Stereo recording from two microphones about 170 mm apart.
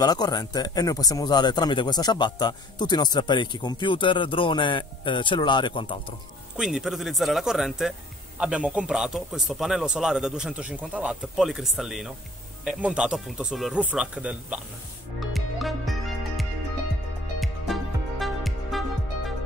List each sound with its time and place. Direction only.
0.0 s speech: 25° left (ahead or behind)
6.5 s a man's voice: 5° right (ahead or behind)
15.1 s music: centre (ahead or behind)
18.2 s music: centre (ahead or behind)